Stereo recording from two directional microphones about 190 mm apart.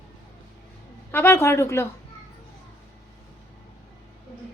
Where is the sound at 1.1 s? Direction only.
10° left (ahead or behind).